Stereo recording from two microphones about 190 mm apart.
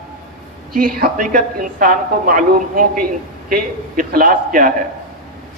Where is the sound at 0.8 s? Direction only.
50° right (ahead or behind).